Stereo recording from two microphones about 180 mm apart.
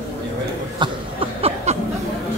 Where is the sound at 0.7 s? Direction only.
30° right (ahead or behind).